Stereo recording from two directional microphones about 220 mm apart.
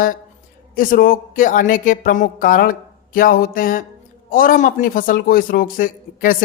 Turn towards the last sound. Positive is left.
turn(degrees=40)  # may be behind; listen again after turning